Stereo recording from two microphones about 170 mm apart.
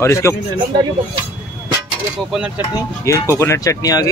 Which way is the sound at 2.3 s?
5° right (ahead or behind).